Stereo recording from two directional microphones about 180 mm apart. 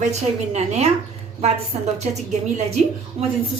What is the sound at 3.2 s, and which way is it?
Speech, 30° right (ahead or behind).